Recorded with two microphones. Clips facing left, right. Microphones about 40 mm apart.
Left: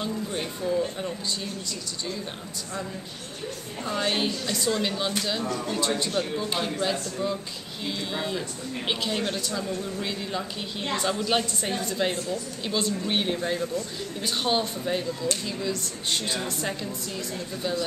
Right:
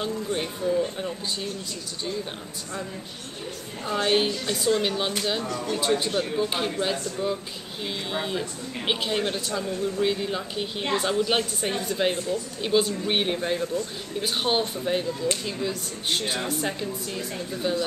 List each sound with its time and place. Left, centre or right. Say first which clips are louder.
0.0 s a woman's voice: right 2 dB; centre
3.8 s a woman's voice: right 3 dB; centre
5.9 s a woman's voice: right 2 dB; centre